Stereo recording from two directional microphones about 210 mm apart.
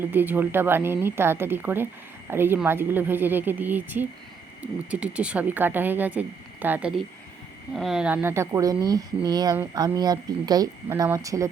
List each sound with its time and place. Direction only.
0.1 s speech: 10° right (ahead or behind)